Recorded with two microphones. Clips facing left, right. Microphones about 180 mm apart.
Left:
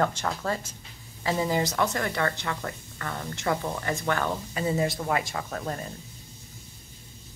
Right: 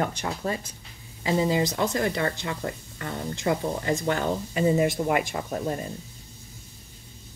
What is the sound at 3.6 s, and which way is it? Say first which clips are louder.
Speech: right 4 dB; 25° right (ahead or behind).